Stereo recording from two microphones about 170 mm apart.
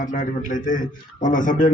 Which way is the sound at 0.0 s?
50° left (ahead or behind).